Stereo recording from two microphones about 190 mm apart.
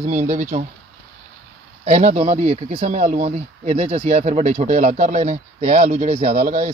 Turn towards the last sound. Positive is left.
turn(degrees=-40)  # may be behind; listen again after turning